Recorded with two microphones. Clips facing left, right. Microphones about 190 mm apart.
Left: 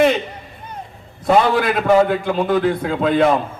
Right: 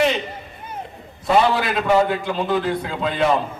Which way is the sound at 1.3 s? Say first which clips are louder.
Left 3 dB; 50° left (ahead or behind).